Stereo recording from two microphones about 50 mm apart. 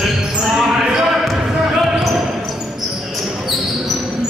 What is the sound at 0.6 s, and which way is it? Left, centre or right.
Basketball bounce, centre.